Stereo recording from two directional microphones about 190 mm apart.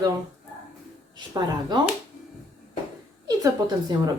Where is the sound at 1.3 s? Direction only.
25° right (ahead or behind).